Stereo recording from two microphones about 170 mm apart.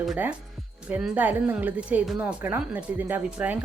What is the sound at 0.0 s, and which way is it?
A woman's voice, 5° right (ahead or behind).